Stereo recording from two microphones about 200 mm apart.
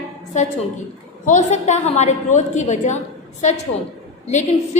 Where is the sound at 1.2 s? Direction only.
35° left (ahead or behind).